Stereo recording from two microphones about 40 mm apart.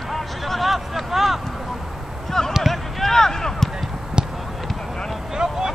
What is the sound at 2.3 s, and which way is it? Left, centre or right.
Basketball bounce, centre.